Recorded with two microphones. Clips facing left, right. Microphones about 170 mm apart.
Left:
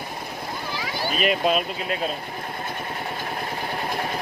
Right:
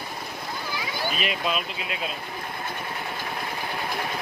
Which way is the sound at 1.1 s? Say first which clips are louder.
Left 9 dB; 45° left (ahead or behind).